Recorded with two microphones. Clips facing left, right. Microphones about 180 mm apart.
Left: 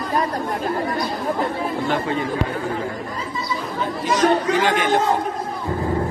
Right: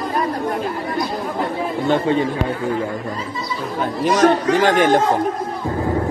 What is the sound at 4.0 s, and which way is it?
Speech, 50° right (ahead or behind).